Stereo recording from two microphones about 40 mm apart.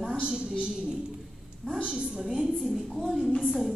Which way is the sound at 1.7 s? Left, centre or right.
Right.